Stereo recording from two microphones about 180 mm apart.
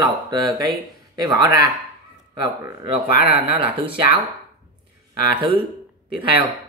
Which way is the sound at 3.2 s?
30° right (ahead or behind).